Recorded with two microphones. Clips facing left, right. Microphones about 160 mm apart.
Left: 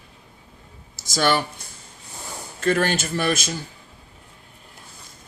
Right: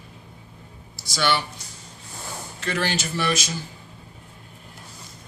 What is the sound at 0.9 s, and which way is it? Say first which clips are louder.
Speech: left 3 dB; 45° left (ahead or behind).